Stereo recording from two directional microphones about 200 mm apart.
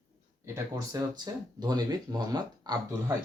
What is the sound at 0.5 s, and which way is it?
Speech, 20° right (ahead or behind).